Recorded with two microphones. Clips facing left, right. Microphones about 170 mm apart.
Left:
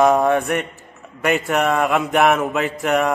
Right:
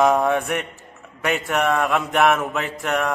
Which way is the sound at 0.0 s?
Centre (ahead or behind).